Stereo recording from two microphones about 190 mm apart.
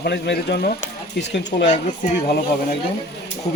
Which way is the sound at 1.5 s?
35° left (ahead or behind).